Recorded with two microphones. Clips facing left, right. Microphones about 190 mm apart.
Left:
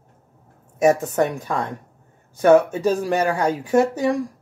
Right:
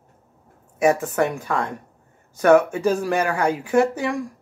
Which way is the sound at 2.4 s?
35° left (ahead or behind).